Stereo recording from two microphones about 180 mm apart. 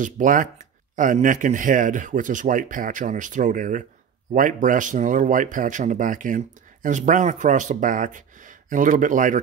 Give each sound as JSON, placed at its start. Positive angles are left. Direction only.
{"t": 0.0, "sound": "speech", "side_deg": -45}